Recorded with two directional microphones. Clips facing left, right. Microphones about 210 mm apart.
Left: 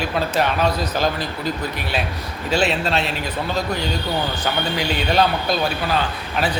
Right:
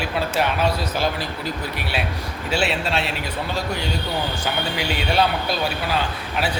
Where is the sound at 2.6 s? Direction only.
10° right (ahead or behind).